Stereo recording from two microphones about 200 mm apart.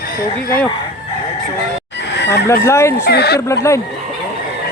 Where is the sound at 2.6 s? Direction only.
15° left (ahead or behind).